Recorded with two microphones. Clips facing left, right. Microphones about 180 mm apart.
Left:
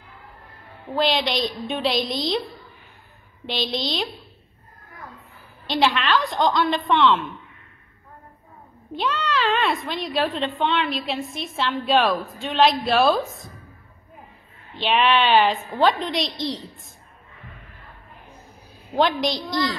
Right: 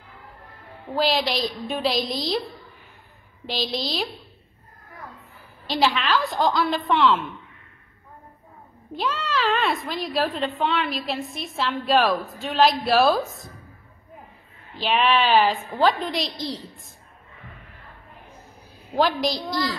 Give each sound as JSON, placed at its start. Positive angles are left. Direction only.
{"t": 0.9, "sound": "a woman's voice", "side_deg": -5}
{"t": 3.4, "sound": "a woman's voice", "side_deg": 0}
{"t": 5.7, "sound": "a woman's voice", "side_deg": 0}
{"t": 8.9, "sound": "a woman's voice", "side_deg": 0}
{"t": 14.8, "sound": "a woman's voice", "side_deg": 0}
{"t": 18.9, "sound": "a woman's voice", "side_deg": 0}